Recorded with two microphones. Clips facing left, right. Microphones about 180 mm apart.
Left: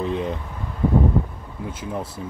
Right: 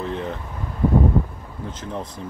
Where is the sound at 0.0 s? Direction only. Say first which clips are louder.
Left 3 dB; 15° left (ahead or behind).